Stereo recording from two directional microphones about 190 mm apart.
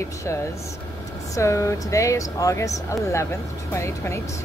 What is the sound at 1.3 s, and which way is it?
Speech, 15° left (ahead or behind).